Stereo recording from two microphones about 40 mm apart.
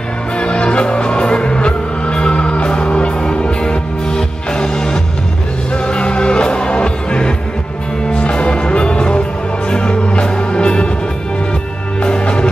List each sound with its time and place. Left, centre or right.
0.4 s music: left
12.0 s music: left